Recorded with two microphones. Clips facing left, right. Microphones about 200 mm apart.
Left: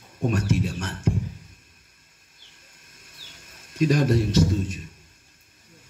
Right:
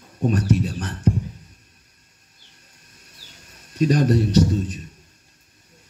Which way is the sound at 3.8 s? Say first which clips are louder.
Right 2 dB; 35° right (ahead or behind).